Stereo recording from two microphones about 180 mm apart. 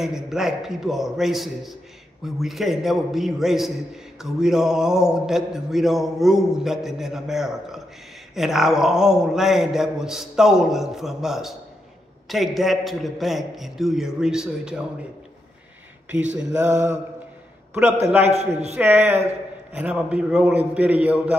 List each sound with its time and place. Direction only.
0.0 s a man's voice: centre (ahead or behind)
16.3 s a man's voice: 5° right (ahead or behind)
18.3 s a man's voice: 35° right (ahead or behind)
18.8 s a man's voice: 10° right (ahead or behind)